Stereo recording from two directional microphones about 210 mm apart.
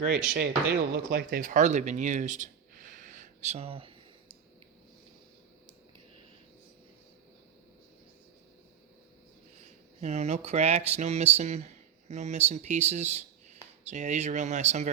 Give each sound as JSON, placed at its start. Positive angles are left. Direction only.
{"t": 0.0, "sound": "speech", "side_deg": -50}
{"t": 1.1, "sound": "a sound", "side_deg": -40}
{"t": 10.0, "sound": "speech", "side_deg": -30}